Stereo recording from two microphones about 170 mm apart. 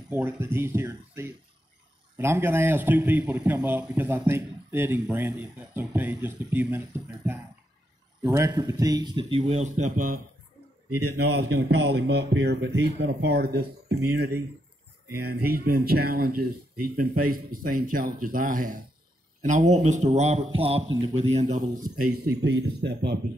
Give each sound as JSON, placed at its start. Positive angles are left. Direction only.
{"t": 0.1, "sound": "a man's voice", "side_deg": -15}
{"t": 8.2, "sound": "speech", "side_deg": -20}
{"t": 9.4, "sound": "a man's voice", "side_deg": -45}
{"t": 11.1, "sound": "speech", "side_deg": -80}
{"t": 15.1, "sound": "a man's voice", "side_deg": -65}
{"t": 22.4, "sound": "speech", "side_deg": -90}